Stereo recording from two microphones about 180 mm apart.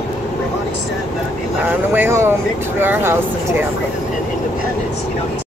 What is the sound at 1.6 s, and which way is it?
Speech, 10° right (ahead or behind).